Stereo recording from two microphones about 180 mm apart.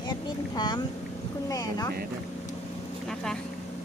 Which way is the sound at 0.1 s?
25° left (ahead or behind).